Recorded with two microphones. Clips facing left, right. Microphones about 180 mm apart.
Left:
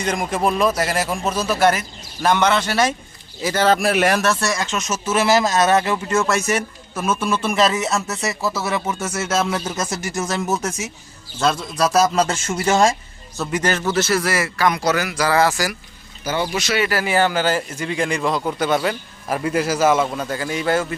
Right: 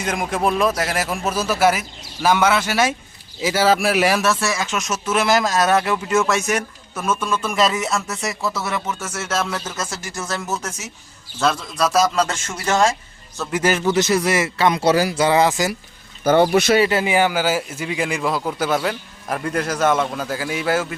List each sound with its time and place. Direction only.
0.0 s speech: centre (ahead or behind); by 10.7 s 15° left (ahead or behind)
11.3 s speech: centre (ahead or behind)
13.4 s a man's voice: 5° right (ahead or behind)
16.2 s speech: 55° right (ahead or behind)
16.9 s speech: 20° right (ahead or behind)